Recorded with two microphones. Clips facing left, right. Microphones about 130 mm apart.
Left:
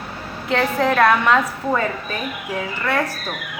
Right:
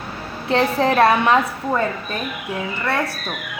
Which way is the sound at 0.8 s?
30° right (ahead or behind).